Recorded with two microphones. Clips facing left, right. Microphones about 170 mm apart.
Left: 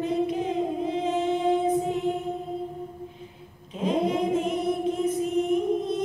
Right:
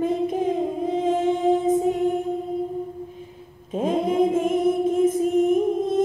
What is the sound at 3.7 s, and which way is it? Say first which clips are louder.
Mantra: right 4 dB; 50° right (ahead or behind).